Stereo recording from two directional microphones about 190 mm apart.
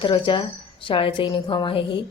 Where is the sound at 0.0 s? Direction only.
25° left (ahead or behind).